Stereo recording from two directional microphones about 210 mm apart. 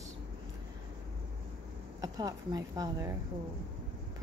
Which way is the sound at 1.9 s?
15° right (ahead or behind).